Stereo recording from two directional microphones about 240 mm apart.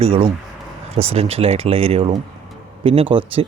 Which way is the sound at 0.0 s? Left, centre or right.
Right.